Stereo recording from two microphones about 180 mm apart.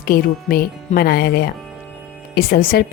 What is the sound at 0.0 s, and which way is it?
A woman's voice, 55° left (ahead or behind).